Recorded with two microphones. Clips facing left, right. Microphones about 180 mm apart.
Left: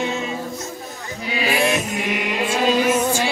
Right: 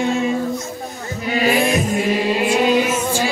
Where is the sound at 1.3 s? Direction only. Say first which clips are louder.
Right 4 dB; 45° right (ahead or behind).